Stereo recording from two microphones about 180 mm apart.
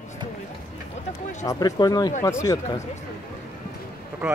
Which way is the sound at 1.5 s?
20° left (ahead or behind).